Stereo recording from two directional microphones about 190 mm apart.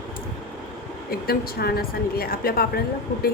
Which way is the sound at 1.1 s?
50° left (ahead or behind).